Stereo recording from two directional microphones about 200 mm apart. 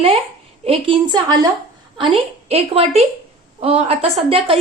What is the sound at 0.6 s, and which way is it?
A woman's voice, 25° right (ahead or behind).